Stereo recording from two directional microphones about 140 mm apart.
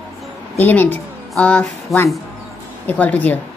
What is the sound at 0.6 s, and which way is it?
A woman's voice, 10° left (ahead or behind).